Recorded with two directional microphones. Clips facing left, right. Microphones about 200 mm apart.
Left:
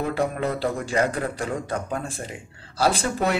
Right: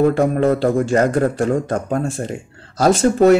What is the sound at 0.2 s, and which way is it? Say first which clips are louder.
Speech: right 9 dB; 45° right (ahead or behind).